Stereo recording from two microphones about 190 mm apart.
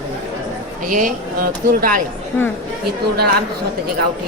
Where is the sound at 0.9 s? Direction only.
45° right (ahead or behind).